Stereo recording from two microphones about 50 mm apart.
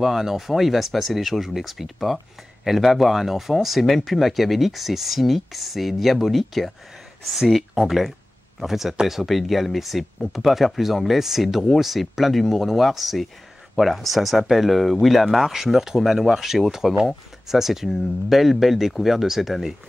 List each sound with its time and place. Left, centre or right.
0.0 s speech: centre